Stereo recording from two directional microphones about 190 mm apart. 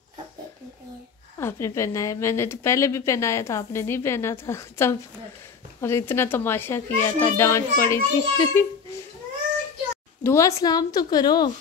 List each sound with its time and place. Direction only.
1.4 s a woman's voice: 15° left (ahead or behind)
10.2 s a woman's voice: 15° left (ahead or behind)